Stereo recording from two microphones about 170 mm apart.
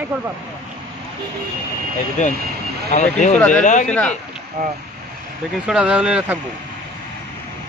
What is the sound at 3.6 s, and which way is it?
Speech, 45° left (ahead or behind).